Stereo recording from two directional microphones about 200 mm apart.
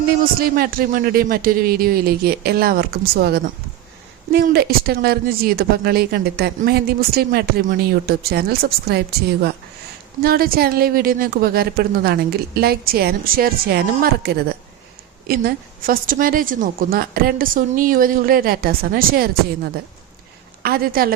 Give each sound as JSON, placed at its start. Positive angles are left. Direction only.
{"t": 0.3, "sound": "speech", "side_deg": -50}
{"t": 20.6, "sound": "speech", "side_deg": -50}